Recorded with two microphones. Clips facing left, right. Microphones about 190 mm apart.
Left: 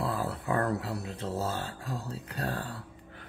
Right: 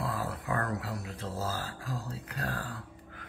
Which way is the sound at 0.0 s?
30° left (ahead or behind).